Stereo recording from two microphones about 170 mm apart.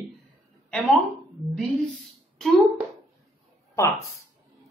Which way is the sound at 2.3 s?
Centre (ahead or behind).